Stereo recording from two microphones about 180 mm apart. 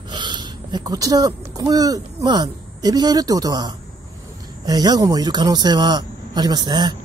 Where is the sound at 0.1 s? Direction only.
25° right (ahead or behind).